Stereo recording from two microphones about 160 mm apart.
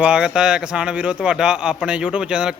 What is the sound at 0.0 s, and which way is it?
A man's voice, 5° right (ahead or behind).